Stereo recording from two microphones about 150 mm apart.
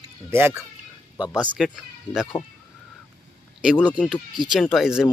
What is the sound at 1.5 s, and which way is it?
Speech, 5° right (ahead or behind).